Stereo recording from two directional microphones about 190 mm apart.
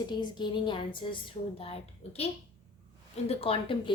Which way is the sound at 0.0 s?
25° left (ahead or behind).